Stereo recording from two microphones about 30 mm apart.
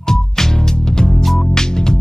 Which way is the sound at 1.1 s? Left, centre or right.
Centre.